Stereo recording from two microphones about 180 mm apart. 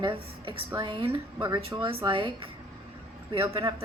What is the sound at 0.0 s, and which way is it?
Speech, 30° right (ahead or behind).